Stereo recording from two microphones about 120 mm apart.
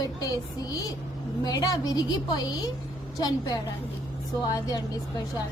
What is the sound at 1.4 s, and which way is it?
A woman's voice, 30° left (ahead or behind).